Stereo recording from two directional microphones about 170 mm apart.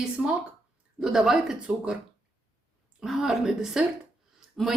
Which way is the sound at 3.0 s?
5° right (ahead or behind).